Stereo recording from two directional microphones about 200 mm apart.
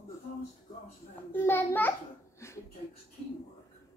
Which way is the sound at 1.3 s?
10° left (ahead or behind).